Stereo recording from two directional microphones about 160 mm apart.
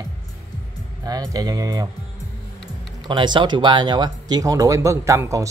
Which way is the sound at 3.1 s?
30° right (ahead or behind).